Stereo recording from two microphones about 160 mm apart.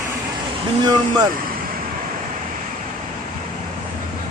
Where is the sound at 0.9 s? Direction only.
25° right (ahead or behind).